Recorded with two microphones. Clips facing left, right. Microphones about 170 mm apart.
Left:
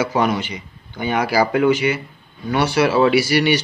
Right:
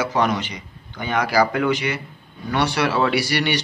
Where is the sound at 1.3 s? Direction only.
25° left (ahead or behind).